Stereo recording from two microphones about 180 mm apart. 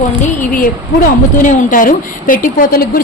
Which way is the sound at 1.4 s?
50° left (ahead or behind).